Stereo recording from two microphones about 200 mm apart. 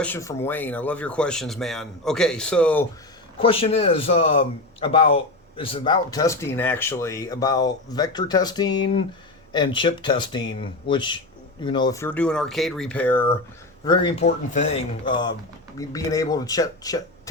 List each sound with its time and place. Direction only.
0.0 s speech: 10° left (ahead or behind)
3.3 s a man's voice: 30° left (ahead or behind); by 13.3 s 10° left (ahead or behind)
13.8 s a man's voice: 20° left (ahead or behind)
14.3 s speech: 35° left (ahead or behind)
15.0 s a man's voice: 20° left (ahead or behind)